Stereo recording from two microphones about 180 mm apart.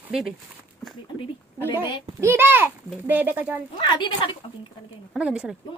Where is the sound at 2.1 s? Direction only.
15° right (ahead or behind).